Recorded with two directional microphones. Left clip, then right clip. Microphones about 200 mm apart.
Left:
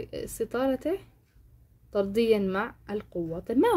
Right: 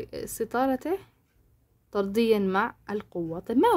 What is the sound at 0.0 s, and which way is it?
A woman's voice, 25° right (ahead or behind).